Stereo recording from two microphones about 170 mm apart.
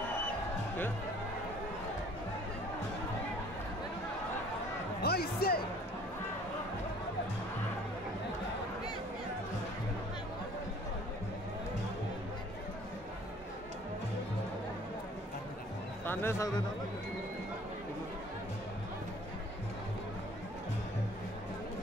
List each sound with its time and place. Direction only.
5.0 s speech: 65° left (ahead or behind)
16.1 s a man's voice: 15° left (ahead or behind)